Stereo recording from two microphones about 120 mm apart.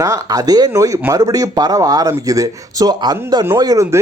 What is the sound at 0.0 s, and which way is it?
Speech, 30° right (ahead or behind).